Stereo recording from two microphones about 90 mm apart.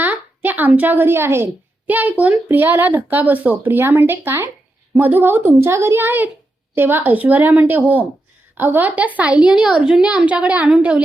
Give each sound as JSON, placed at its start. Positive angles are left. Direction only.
{"t": 0.0, "sound": "a woman's voice", "side_deg": -20}